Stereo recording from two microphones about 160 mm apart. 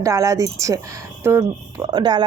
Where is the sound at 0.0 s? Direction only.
20° right (ahead or behind).